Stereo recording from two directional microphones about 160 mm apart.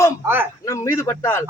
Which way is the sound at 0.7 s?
15° left (ahead or behind).